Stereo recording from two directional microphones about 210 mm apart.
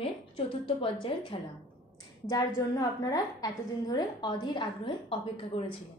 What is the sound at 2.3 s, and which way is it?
A woman's voice, 15° left (ahead or behind).